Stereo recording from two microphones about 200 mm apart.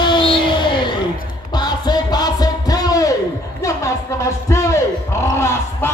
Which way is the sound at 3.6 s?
15° left (ahead or behind).